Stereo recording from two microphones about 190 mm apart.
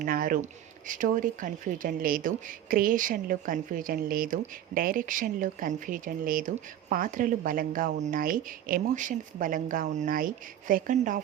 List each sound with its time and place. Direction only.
0.0 s speech: 50° right (ahead or behind)